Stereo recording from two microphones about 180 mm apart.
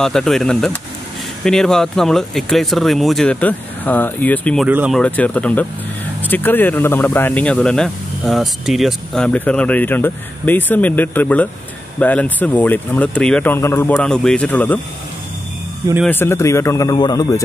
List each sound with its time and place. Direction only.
0.0 s speech: centre (ahead or behind)
4.6 s speech: 10° right (ahead or behind)
4.9 s speech: 5° left (ahead or behind)
16.1 s speech: 15° left (ahead or behind)